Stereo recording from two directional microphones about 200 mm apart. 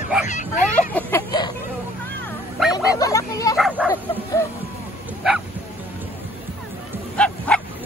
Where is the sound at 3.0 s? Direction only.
15° left (ahead or behind).